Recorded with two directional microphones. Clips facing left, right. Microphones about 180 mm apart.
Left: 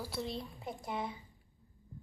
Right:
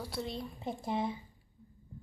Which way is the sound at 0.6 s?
25° right (ahead or behind).